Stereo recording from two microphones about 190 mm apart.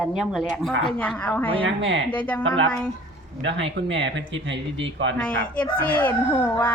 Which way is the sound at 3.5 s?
75° right (ahead or behind).